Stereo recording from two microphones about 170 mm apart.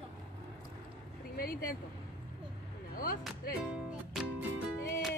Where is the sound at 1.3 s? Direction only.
60° left (ahead or behind).